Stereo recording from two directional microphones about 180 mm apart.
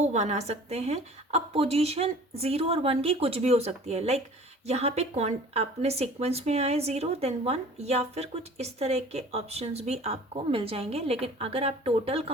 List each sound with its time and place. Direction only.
0.0 s speech: 40° right (ahead or behind)